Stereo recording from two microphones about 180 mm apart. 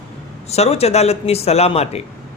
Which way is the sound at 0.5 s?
35° left (ahead or behind).